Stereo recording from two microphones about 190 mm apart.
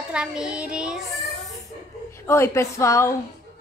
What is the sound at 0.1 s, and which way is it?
Child singing, 5° right (ahead or behind).